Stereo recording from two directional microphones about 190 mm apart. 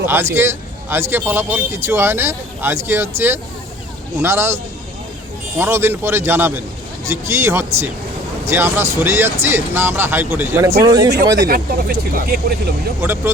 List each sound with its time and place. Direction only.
0.0 s speech: 10° right (ahead or behind)
5.5 s speech: 15° right (ahead or behind)
11.3 s speech: 55° right (ahead or behind)
13.0 s speech: 10° right (ahead or behind)